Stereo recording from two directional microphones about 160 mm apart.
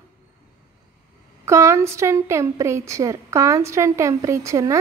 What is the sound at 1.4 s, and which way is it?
A woman's voice, 15° right (ahead or behind).